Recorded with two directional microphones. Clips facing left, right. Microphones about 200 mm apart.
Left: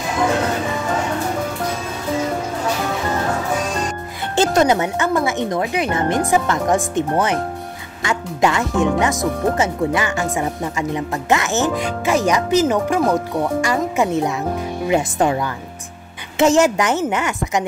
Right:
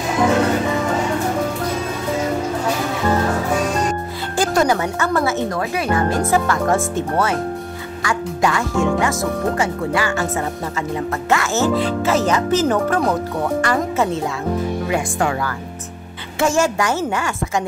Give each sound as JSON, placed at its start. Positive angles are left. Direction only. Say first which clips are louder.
{"t": 4.4, "sound": "speech", "louder": "left 2 dB", "side_deg": 20}
{"t": 16.3, "sound": "speech", "louder": "left 4 dB", "side_deg": 20}